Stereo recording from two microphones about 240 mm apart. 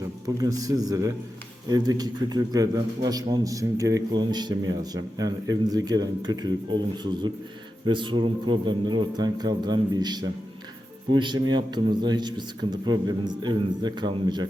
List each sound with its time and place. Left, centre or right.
0.4 s a man's voice: centre